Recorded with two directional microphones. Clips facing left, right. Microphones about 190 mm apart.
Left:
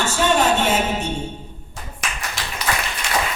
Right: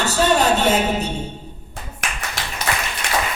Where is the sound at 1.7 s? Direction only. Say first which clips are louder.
Right 1 dB; 65° right (ahead or behind).